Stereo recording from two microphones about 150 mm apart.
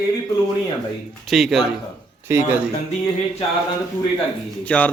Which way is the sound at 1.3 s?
Centre (ahead or behind).